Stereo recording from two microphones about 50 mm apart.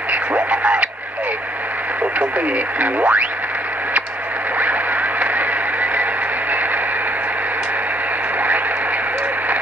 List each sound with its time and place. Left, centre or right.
0.1 s radio: right
2.1 s speech: right
5.2 s a sound: right